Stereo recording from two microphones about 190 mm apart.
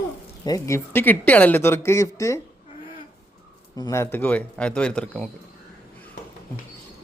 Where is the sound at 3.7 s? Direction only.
15° left (ahead or behind).